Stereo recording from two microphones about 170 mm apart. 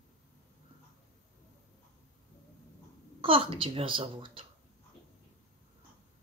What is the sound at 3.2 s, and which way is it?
Speech, 30° right (ahead or behind).